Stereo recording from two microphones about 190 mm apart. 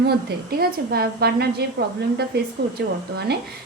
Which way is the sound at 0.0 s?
55° right (ahead or behind).